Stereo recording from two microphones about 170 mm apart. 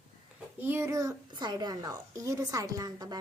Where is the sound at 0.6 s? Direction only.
15° right (ahead or behind).